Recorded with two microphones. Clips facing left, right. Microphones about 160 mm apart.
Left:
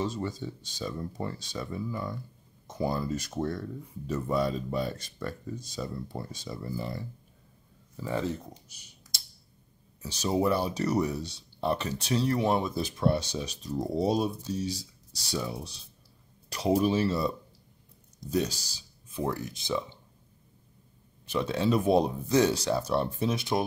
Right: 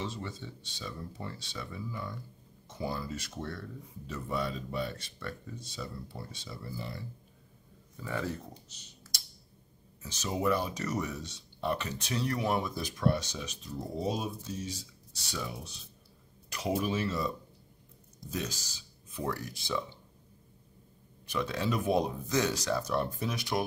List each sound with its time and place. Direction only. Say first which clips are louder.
0.0 s speech: left 7 dB; 40° left (ahead or behind)
8.0 s speech: left 4 dB; 25° left (ahead or behind)
8.6 s speech: right 1 dB; 10° left (ahead or behind)
10.0 s speech: left 4 dB; 35° left (ahead or behind)
18.3 s speech: left 8 dB; 35° left (ahead or behind)
21.3 s speech: left 5 dB; 25° left (ahead or behind)